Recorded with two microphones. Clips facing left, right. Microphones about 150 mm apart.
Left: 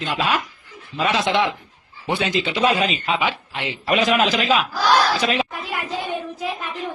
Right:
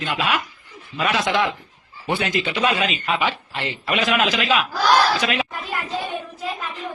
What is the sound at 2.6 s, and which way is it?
Speech, 35° left (ahead or behind).